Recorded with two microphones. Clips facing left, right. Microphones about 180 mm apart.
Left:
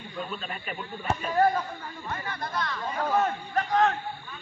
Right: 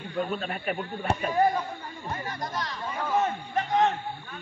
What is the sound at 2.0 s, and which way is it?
Speech, 40° right (ahead or behind).